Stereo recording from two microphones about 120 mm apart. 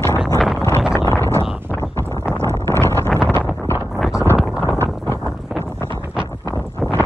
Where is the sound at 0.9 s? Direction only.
20° left (ahead or behind).